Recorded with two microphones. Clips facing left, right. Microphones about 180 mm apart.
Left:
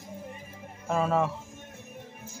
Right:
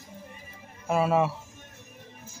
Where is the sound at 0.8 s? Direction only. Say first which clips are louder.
Right 2 dB; 10° right (ahead or behind).